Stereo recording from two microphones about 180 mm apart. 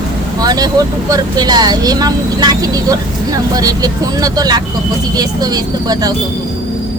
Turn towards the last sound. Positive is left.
turn(degrees=-20)  # may be behind; listen again after turning